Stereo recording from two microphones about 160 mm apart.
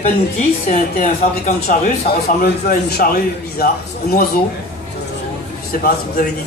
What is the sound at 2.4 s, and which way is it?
Speech, 65° left (ahead or behind).